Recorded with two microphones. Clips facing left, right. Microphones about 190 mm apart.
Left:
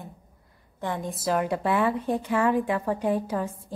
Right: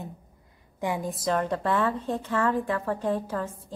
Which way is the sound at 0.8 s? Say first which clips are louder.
Right 2 dB; 10° right (ahead or behind).